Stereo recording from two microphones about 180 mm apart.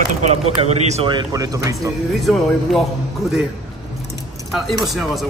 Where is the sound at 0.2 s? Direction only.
35° right (ahead or behind); by 1.8 s 20° right (ahead or behind).